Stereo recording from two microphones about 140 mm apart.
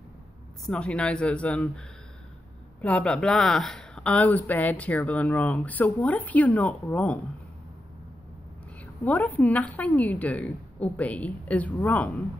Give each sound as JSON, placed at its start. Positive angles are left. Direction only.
{"t": 0.7, "sound": "speech", "side_deg": 10}
{"t": 9.0, "sound": "speech", "side_deg": 10}